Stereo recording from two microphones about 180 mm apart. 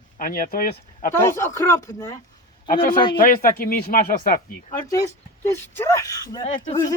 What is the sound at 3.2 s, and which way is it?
Speech, 55° left (ahead or behind).